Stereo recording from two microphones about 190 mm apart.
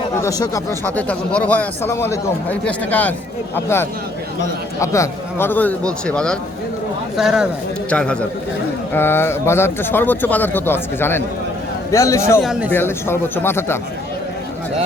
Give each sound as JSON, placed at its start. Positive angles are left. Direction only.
{"t": 0.2, "sound": "a man's voice", "side_deg": 20}
{"t": 12.4, "sound": "a man's voice", "side_deg": 0}
{"t": 12.7, "sound": "speech", "side_deg": 10}